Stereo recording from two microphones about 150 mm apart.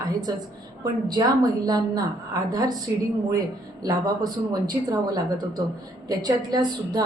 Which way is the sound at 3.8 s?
25° right (ahead or behind).